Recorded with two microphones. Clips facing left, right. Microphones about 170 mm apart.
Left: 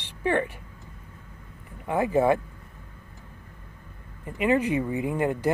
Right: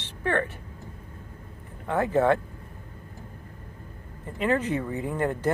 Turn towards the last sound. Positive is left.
turn(degrees=10)  # may be behind; listen again after turning